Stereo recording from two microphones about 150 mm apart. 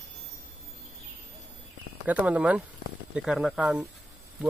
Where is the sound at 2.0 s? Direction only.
10° right (ahead or behind).